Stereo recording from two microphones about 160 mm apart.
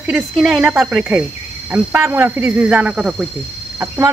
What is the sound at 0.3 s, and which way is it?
Speech, 5° right (ahead or behind).